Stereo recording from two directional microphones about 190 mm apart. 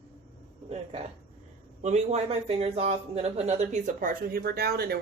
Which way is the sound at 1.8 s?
35° right (ahead or behind).